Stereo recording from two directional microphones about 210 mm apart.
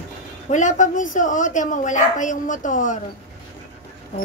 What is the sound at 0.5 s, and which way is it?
Speech, 35° left (ahead or behind).